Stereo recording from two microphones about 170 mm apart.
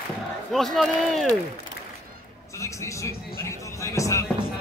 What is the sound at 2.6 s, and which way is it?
Music, 15° left (ahead or behind).